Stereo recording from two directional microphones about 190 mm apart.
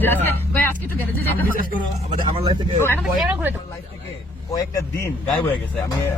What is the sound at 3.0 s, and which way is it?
Speech, centre (ahead or behind).